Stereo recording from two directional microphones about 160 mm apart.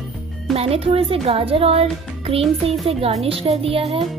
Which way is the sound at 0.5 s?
40° right (ahead or behind).